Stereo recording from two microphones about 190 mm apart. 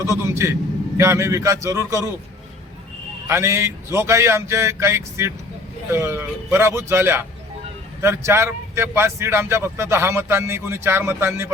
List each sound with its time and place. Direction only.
0.0 s a man's voice: 15° right (ahead or behind)
3.2 s a man's voice: 15° right (ahead or behind)